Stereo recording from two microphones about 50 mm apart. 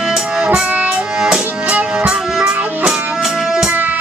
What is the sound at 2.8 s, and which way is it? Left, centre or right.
Music, centre.